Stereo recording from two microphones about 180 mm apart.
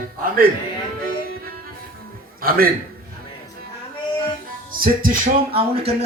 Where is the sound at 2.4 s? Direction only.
55° right (ahead or behind).